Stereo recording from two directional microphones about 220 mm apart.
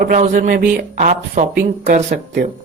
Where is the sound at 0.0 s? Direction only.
35° right (ahead or behind).